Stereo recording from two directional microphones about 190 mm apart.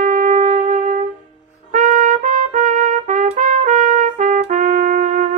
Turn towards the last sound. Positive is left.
turn(degrees=-45)  # may be behind; listen again after turning